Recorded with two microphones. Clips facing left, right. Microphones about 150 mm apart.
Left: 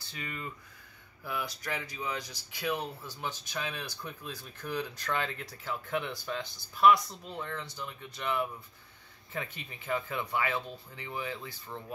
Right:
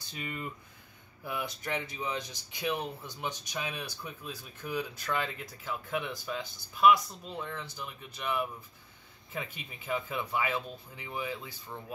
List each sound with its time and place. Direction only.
0.1 s speech: 20° right (ahead or behind)